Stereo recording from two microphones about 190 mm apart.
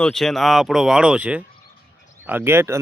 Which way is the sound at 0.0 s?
Centre (ahead or behind).